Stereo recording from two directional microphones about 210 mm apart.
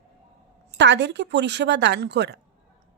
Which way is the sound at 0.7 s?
55° right (ahead or behind).